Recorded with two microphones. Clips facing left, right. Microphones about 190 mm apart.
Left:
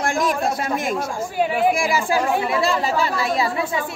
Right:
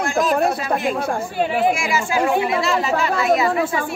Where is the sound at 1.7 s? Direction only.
35° left (ahead or behind).